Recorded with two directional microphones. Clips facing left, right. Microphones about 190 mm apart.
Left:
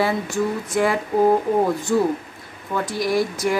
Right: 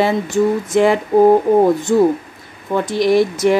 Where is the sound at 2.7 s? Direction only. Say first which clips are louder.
Right 7 dB; 25° right (ahead or behind).